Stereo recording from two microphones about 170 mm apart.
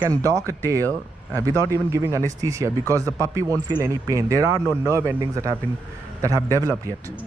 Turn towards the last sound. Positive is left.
turn(degrees=-20)  # may be behind; listen again after turning